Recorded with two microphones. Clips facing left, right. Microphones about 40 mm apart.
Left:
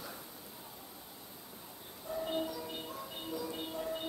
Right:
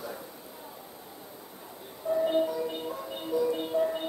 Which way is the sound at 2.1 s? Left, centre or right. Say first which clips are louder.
Right 10 dB; right.